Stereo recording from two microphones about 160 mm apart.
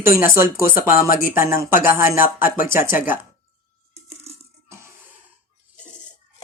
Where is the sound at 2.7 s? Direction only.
60° left (ahead or behind).